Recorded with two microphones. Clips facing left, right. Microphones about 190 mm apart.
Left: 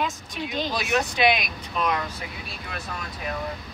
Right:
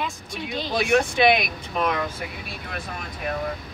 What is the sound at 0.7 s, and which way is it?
Speech, 55° right (ahead or behind).